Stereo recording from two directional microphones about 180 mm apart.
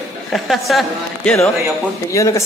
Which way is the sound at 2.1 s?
15° left (ahead or behind).